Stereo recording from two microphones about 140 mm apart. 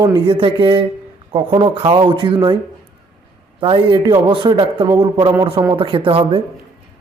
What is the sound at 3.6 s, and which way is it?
Speech, 35° right (ahead or behind).